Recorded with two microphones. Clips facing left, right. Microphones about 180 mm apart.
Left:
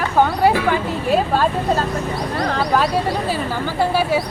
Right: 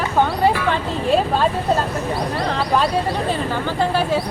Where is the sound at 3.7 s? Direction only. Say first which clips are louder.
Left 2 dB; 10° left (ahead or behind).